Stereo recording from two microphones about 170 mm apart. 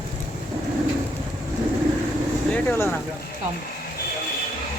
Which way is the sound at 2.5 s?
10° left (ahead or behind).